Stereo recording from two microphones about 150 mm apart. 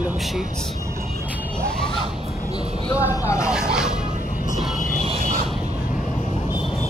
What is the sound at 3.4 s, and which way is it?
Music, 5° right (ahead or behind).